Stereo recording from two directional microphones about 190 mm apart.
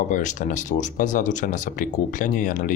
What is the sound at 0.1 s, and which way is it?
Speech, 40° left (ahead or behind).